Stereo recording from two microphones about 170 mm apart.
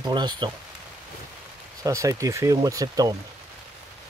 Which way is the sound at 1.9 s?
20° right (ahead or behind).